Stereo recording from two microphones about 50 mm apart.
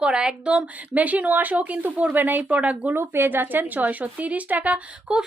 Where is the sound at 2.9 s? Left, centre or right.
Right.